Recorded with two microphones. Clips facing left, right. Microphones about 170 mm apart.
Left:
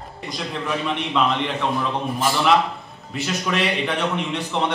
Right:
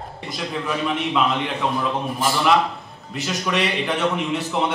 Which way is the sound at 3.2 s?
Centre (ahead or behind).